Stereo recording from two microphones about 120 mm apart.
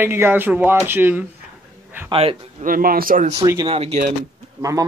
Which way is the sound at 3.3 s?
30° right (ahead or behind).